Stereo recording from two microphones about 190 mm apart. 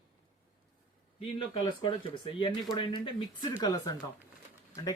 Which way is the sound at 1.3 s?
25° left (ahead or behind).